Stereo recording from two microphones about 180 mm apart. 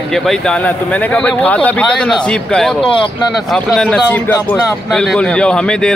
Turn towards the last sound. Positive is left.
turn(degrees=5)  # may be behind; listen again after turning